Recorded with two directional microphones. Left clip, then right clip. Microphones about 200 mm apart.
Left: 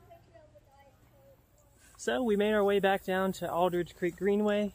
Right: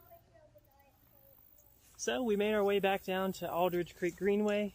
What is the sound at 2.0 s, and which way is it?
Speech, 5° left (ahead or behind).